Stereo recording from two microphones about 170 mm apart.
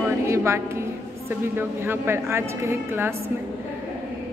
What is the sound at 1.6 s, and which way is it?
A woman's voice, 15° right (ahead or behind).